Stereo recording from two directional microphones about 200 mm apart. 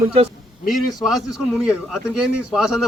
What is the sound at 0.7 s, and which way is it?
A man's voice, centre (ahead or behind).